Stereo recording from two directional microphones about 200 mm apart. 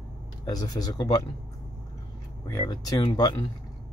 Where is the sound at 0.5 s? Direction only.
20° left (ahead or behind).